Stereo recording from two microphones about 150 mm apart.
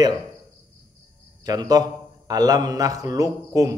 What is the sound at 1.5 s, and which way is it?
A man's voice, 25° right (ahead or behind).